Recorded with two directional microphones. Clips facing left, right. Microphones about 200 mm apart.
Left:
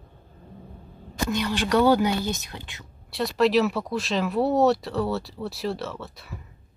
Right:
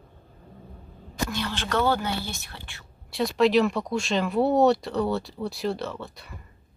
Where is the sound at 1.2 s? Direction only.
15° left (ahead or behind).